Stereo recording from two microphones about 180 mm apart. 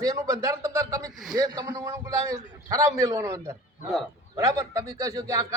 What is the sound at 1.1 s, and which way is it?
Speech, centre (ahead or behind).